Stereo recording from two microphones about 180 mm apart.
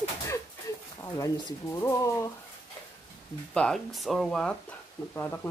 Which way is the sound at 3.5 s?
5° left (ahead or behind).